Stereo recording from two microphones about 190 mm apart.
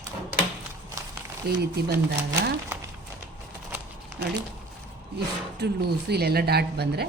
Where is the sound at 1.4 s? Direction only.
55° right (ahead or behind).